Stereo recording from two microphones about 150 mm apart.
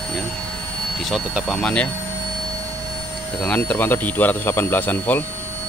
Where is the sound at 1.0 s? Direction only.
5° right (ahead or behind).